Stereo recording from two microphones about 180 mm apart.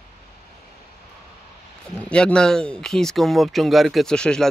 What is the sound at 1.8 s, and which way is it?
Speech, 5° left (ahead or behind).